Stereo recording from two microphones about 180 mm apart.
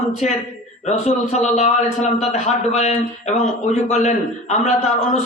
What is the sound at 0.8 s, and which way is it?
A man's voice, 40° left (ahead or behind).